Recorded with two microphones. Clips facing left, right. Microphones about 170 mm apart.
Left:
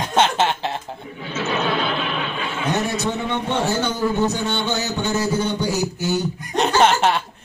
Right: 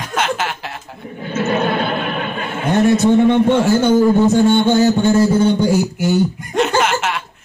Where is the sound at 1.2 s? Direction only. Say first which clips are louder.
Right 6 dB; 50° right (ahead or behind).